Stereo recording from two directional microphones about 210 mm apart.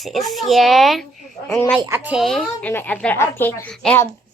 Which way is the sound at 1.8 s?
10° right (ahead or behind).